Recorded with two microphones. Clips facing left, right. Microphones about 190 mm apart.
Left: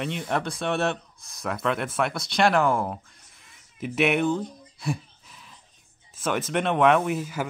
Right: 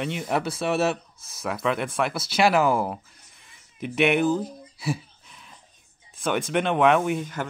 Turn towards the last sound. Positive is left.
turn(degrees=5)  # may be behind; listen again after turning